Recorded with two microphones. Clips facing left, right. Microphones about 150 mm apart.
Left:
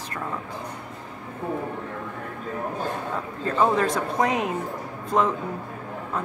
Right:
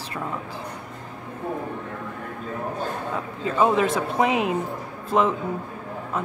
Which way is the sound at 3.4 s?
10° right (ahead or behind).